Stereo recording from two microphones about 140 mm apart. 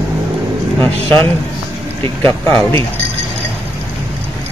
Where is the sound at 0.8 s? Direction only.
15° left (ahead or behind).